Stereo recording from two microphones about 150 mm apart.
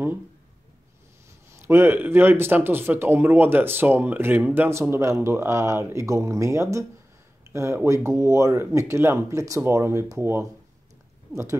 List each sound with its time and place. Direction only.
1.5 s speech: 15° right (ahead or behind)